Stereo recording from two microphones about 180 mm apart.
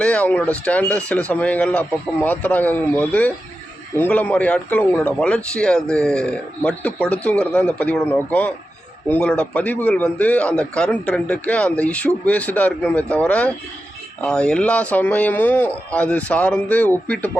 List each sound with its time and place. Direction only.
0.0 s speech: 5° left (ahead or behind)